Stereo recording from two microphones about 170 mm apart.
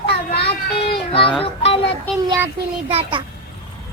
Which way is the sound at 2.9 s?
35° right (ahead or behind).